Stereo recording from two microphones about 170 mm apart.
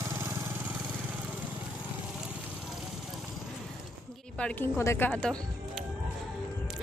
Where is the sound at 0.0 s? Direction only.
15° right (ahead or behind).